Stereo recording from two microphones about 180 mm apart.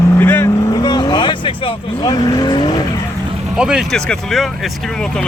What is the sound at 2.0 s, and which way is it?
Speech, 25° left (ahead or behind).